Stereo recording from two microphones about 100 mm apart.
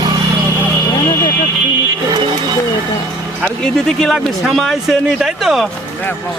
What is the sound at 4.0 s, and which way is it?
Speech, centre (ahead or behind).